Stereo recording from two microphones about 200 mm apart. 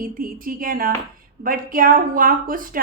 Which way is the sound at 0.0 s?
45° right (ahead or behind).